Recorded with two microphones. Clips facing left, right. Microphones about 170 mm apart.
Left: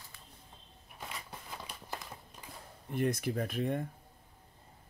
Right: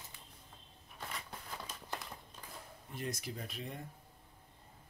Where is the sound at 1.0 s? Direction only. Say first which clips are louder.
Left 1 dB; centre (ahead or behind).